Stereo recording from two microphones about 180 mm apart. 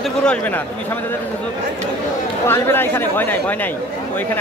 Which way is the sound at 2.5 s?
10° left (ahead or behind).